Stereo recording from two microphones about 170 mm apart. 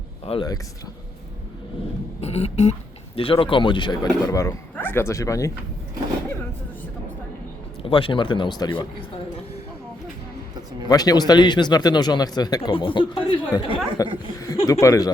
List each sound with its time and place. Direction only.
0.3 s speech: 25° left (ahead or behind)
2.2 s a sound: 40° left (ahead or behind)
3.2 s speech: 30° left (ahead or behind)
7.8 s speech: 30° left (ahead or behind)
10.8 s speech: 20° left (ahead or behind)
14.0 s speech: 20° left (ahead or behind)